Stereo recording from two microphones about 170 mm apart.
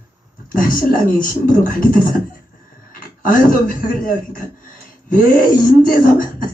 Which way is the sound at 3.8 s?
55° left (ahead or behind).